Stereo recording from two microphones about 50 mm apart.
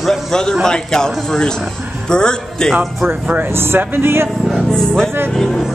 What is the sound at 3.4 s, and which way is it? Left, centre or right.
Speech, right.